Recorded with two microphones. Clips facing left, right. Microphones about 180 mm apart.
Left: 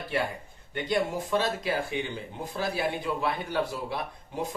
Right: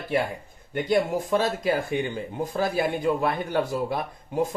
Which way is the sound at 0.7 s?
45° right (ahead or behind).